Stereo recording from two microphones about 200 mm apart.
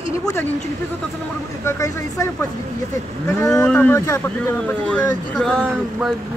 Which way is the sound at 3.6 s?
5° left (ahead or behind).